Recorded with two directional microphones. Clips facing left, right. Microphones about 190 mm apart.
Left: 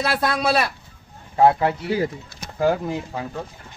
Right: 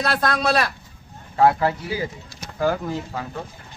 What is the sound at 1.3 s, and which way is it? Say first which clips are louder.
A man's voice: left 1 dB; 20° left (ahead or behind).